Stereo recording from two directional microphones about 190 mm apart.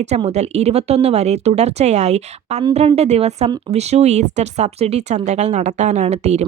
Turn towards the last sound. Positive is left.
turn(degrees=-35)  # may be behind; listen again after turning